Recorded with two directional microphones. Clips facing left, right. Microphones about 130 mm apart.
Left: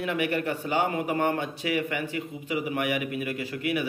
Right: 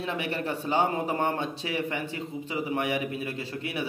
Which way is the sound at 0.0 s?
30° right (ahead or behind).